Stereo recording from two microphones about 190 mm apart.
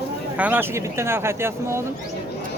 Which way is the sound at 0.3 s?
10° right (ahead or behind).